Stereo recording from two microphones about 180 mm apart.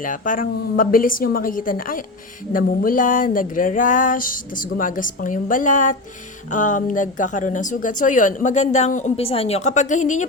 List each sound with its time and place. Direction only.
0.0 s a woman's voice: 50° left (ahead or behind)